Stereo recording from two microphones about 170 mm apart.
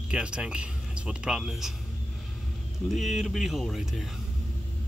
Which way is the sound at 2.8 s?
Centre (ahead or behind).